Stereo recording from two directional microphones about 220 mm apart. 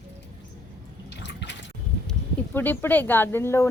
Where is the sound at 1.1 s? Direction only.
50° left (ahead or behind).